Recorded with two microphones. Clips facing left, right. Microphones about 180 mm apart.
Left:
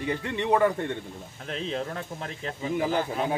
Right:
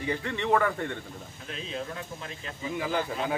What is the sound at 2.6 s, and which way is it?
Speech, 45° left (ahead or behind).